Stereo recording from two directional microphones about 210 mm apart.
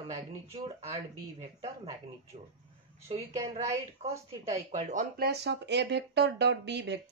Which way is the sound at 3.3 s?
15° right (ahead or behind).